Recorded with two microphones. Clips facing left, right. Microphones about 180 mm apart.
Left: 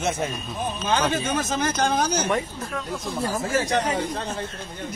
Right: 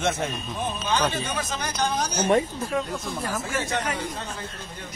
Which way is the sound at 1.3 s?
45° left (ahead or behind).